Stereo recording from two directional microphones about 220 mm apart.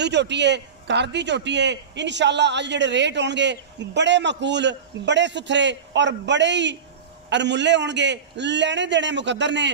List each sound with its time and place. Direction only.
0.0 s a man's voice: 50° right (ahead or behind)